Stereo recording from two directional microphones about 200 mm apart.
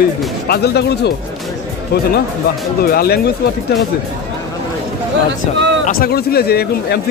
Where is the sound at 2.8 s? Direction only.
50° left (ahead or behind).